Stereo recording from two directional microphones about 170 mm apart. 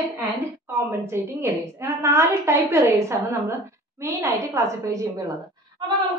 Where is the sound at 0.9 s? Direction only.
15° right (ahead or behind).